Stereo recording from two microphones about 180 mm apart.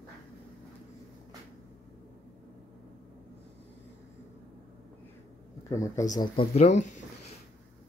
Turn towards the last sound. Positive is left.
turn(degrees=40)  # may be behind; listen again after turning